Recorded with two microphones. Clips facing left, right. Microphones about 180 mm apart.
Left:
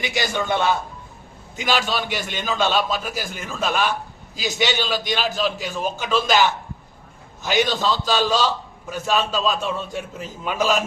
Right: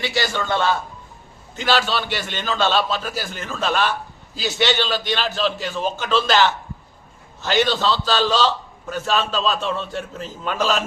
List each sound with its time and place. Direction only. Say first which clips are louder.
0.0 s a man's voice: right 1 dB; 15° left (ahead or behind)